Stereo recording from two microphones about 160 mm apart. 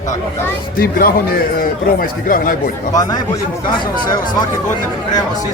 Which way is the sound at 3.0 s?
25° left (ahead or behind).